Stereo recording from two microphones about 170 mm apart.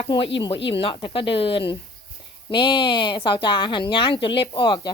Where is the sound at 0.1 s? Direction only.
30° left (ahead or behind).